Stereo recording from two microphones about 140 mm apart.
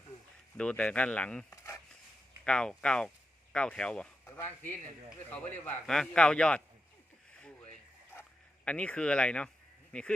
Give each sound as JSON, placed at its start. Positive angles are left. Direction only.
{"t": 0.5, "sound": "a man's voice", "side_deg": 10}
{"t": 1.5, "sound": "a sound", "side_deg": 20}
{"t": 2.4, "sound": "a man's voice", "side_deg": 5}
{"t": 8.6, "sound": "a man's voice", "side_deg": 10}